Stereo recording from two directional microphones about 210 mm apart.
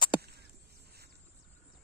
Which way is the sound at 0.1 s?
25° left (ahead or behind).